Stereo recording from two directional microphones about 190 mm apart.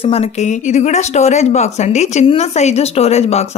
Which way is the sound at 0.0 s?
30° left (ahead or behind).